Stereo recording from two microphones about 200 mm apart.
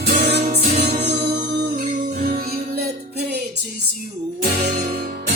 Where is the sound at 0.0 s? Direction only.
55° right (ahead or behind).